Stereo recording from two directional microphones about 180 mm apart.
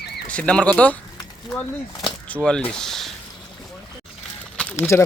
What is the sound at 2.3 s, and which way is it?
Speech, 5° left (ahead or behind).